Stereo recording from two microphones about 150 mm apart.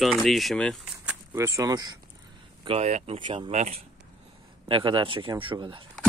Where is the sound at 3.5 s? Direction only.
45° right (ahead or behind).